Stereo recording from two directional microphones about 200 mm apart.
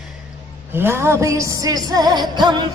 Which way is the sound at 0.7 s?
10° right (ahead or behind).